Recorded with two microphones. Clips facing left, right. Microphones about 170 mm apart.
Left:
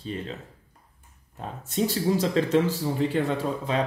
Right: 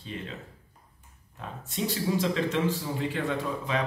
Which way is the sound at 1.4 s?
40° left (ahead or behind).